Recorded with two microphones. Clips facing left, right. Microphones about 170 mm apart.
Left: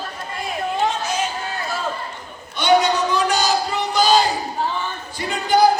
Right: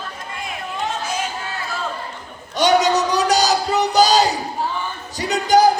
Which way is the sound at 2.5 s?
40° right (ahead or behind).